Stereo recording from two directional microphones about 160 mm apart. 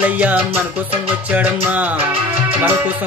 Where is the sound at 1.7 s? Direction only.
10° right (ahead or behind).